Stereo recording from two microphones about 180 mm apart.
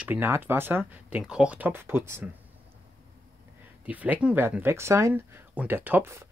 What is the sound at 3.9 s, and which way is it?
Speech, 10° right (ahead or behind).